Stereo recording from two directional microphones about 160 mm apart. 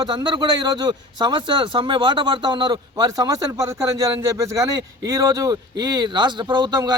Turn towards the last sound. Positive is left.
turn(degrees=-25)  # may be behind; listen again after turning